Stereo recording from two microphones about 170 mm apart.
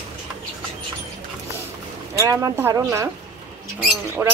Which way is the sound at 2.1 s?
20° right (ahead or behind).